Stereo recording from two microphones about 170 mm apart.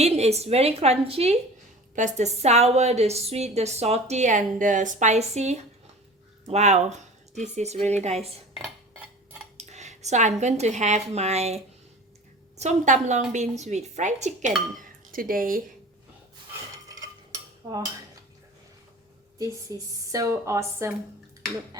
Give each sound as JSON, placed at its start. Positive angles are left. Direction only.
{"t": 0.0, "sound": "a woman's voice", "side_deg": -40}
{"t": 9.6, "sound": "speech", "side_deg": -40}
{"t": 19.4, "sound": "a woman's voice", "side_deg": -20}